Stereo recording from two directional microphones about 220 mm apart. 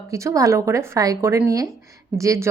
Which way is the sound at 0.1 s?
15° right (ahead or behind).